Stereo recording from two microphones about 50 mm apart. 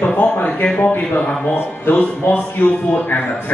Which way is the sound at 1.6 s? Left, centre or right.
Left.